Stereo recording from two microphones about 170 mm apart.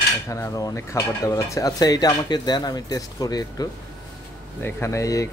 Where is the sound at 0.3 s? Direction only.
20° left (ahead or behind).